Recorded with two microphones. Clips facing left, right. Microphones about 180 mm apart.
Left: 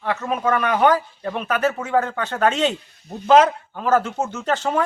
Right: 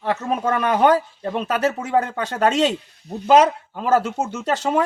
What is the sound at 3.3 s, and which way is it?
Speech, 10° right (ahead or behind).